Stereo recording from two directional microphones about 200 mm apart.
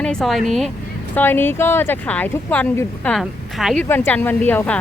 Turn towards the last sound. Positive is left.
turn(degrees=10)  # may be behind; listen again after turning